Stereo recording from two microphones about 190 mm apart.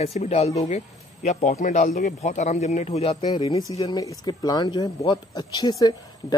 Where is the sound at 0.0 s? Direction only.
30° left (ahead or behind).